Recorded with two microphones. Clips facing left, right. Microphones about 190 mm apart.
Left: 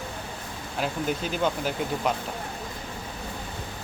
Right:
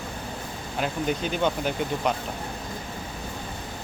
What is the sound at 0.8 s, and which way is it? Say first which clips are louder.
Speech: right 1 dB; centre (ahead or behind).